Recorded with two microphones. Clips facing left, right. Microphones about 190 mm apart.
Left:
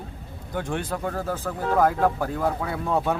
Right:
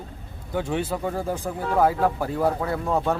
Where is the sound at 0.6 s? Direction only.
5° right (ahead or behind).